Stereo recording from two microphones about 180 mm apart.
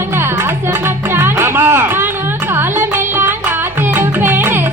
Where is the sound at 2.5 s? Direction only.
10° right (ahead or behind).